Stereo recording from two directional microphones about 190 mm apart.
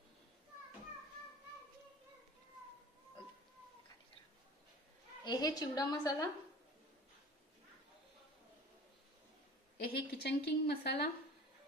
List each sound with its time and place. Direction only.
5.2 s a woman's voice: 20° left (ahead or behind)
9.8 s a woman's voice: 55° left (ahead or behind)